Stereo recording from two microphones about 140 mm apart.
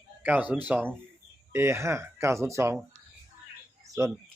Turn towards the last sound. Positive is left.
turn(degrees=-20)  # may be behind; listen again after turning